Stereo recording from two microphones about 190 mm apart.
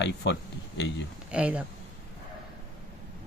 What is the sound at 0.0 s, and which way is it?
Speech, 65° left (ahead or behind).